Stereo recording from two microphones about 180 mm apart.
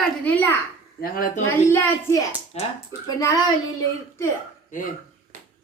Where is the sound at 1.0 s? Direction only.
55° left (ahead or behind).